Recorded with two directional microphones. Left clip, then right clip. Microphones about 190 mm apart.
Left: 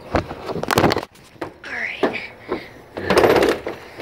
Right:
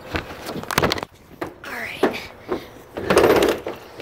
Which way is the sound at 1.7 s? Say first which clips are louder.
Left 1 dB; 10° right (ahead or behind).